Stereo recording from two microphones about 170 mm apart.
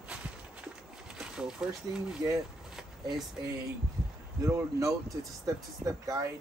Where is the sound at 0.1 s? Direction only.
5° right (ahead or behind).